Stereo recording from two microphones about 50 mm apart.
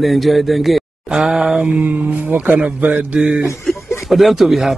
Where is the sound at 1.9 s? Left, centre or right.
Right.